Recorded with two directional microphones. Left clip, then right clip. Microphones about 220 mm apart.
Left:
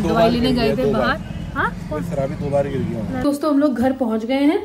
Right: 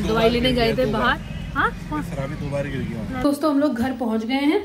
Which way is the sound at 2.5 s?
20° left (ahead or behind).